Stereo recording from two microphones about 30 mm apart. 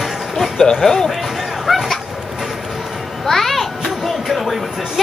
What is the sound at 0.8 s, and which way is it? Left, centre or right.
Child singing, centre.